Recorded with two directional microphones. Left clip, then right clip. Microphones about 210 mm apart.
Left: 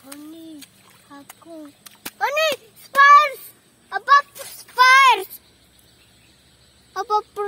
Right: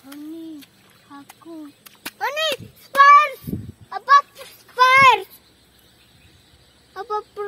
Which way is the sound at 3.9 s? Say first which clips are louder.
Right 1 dB; 35° left (ahead or behind).